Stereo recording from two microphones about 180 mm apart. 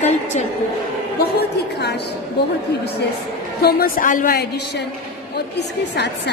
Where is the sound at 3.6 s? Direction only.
60° left (ahead or behind).